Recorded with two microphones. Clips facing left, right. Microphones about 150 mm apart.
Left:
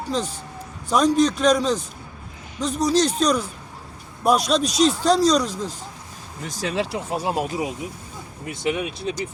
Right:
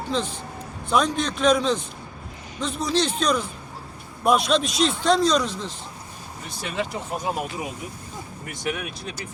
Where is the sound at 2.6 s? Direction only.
40° left (ahead or behind).